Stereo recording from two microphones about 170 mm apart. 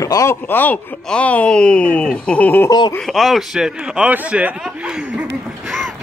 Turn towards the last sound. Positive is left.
turn(degrees=0)  # may be behind; listen again after turning